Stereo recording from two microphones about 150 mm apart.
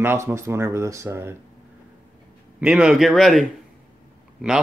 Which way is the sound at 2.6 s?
5° right (ahead or behind).